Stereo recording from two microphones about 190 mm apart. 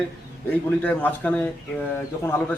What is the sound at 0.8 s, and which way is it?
Speech, 10° left (ahead or behind).